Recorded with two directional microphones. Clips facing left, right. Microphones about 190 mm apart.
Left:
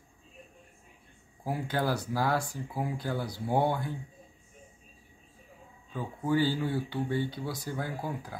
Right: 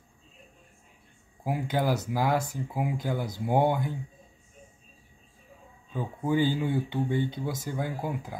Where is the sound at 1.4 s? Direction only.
15° right (ahead or behind).